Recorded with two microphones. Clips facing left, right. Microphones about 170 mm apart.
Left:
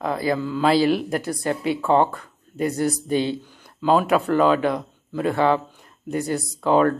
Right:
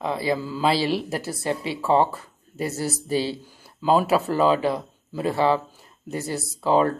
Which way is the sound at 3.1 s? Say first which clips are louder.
Even; 35° right (ahead or behind).